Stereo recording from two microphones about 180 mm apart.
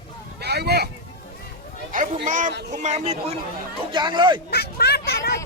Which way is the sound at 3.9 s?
25° right (ahead or behind).